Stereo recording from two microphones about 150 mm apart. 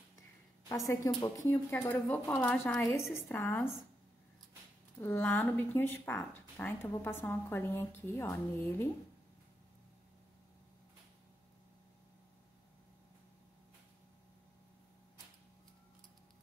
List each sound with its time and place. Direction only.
0.7 s a woman's voice: 20° left (ahead or behind)
5.0 s speech: 15° left (ahead or behind)